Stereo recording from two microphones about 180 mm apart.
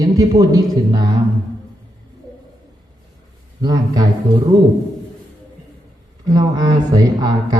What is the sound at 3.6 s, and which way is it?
Speech, 20° right (ahead or behind).